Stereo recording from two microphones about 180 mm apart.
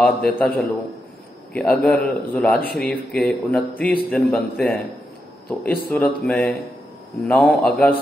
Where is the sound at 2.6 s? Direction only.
60° left (ahead or behind).